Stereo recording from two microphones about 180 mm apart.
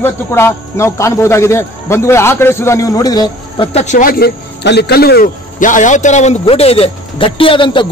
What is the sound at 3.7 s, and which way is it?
Speech, 40° left (ahead or behind).